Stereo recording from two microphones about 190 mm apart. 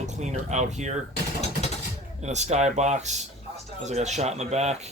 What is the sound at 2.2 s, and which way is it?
Speech, 35° right (ahead or behind).